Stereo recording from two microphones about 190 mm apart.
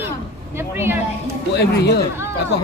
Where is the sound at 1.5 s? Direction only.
60° left (ahead or behind).